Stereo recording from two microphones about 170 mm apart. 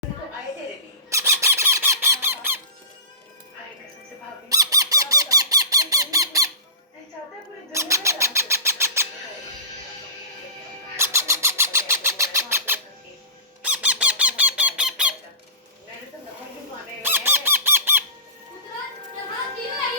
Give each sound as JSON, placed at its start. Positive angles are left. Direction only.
{"t": 1.1, "sound": "squeak", "side_deg": -15}
{"t": 4.4, "sound": "squeak", "side_deg": -20}
{"t": 7.7, "sound": "bird", "side_deg": -15}
{"t": 10.9, "sound": "bird", "side_deg": -15}
{"t": 13.6, "sound": "squeak", "side_deg": -10}
{"t": 17.0, "sound": "a sound", "side_deg": -15}